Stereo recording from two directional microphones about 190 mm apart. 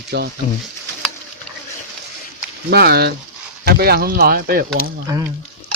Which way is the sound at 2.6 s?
55° right (ahead or behind).